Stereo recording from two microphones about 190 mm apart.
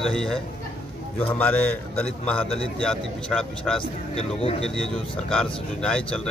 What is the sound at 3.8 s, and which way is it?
Speech, 30° left (ahead or behind).